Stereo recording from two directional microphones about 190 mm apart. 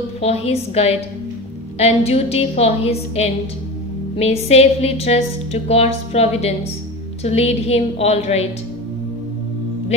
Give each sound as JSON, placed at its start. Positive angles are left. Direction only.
{"t": 0.2, "sound": "a woman's voice", "side_deg": 35}